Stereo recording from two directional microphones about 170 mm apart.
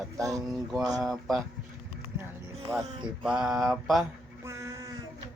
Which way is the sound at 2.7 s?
Centre (ahead or behind).